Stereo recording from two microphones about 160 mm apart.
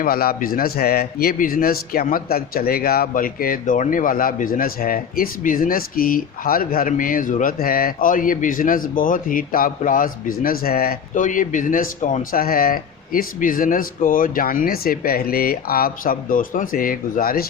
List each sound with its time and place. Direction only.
0.0 s a man's voice: 70° left (ahead or behind)